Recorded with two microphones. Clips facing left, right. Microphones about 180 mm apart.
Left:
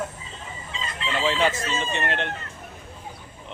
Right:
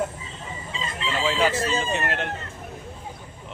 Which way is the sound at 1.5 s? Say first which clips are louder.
Right 5 dB; 35° right (ahead or behind).